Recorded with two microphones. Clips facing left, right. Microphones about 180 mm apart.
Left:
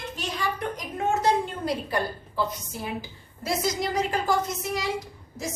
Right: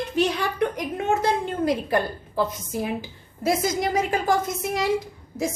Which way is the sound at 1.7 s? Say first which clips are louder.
Right 6 dB; 50° right (ahead or behind).